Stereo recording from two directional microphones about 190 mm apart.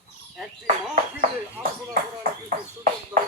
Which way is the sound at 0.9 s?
35° right (ahead or behind).